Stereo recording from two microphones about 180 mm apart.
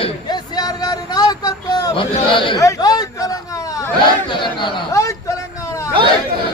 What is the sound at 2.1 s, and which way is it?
Speech, 30° left (ahead or behind).